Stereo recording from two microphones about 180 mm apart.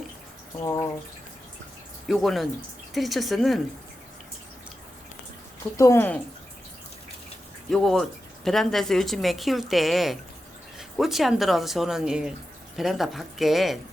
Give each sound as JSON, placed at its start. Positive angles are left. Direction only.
{"t": 0.6, "sound": "speech", "side_deg": 15}
{"t": 2.0, "sound": "speech", "side_deg": 0}
{"t": 5.7, "sound": "speech", "side_deg": 15}
{"t": 7.7, "sound": "speech", "side_deg": 0}